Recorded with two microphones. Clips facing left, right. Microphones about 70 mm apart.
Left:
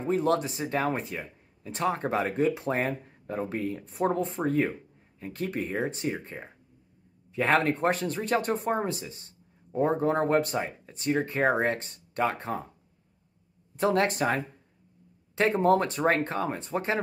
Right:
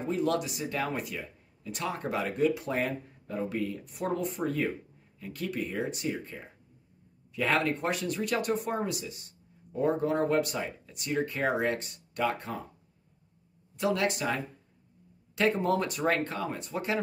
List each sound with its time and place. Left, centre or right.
0.0 s speech: left
13.7 s speech: left